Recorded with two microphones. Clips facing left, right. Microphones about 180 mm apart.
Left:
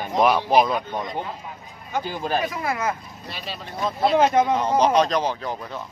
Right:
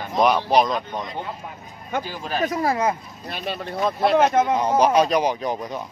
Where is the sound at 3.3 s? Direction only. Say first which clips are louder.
Right 6 dB; 55° right (ahead or behind).